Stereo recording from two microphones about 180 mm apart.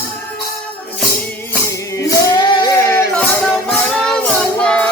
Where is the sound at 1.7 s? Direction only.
20° left (ahead or behind).